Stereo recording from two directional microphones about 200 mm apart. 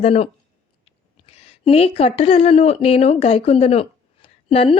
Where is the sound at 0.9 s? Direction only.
30° left (ahead or behind).